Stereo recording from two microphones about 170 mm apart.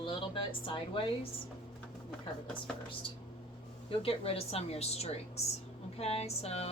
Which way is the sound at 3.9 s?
35° left (ahead or behind).